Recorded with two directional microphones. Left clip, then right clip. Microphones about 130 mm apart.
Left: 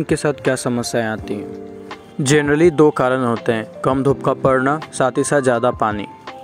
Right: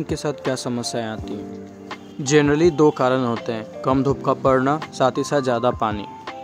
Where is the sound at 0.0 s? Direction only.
35° left (ahead or behind).